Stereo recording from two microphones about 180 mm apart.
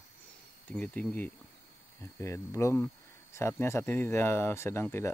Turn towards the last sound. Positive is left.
turn(degrees=15)  # may be behind; listen again after turning